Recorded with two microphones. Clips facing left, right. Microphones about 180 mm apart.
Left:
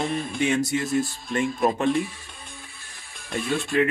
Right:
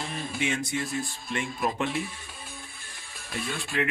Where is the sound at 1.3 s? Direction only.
45° left (ahead or behind).